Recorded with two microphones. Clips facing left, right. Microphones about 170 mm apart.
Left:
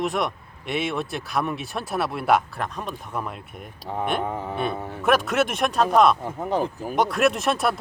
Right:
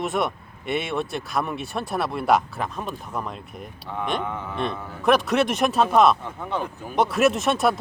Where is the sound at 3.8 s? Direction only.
40° left (ahead or behind).